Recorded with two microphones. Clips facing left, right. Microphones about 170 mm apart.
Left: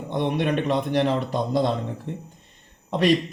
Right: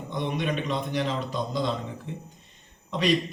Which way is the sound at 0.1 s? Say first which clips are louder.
Left 5 dB; 60° left (ahead or behind).